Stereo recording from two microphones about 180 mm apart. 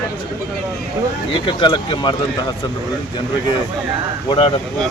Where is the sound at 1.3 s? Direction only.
25° left (ahead or behind).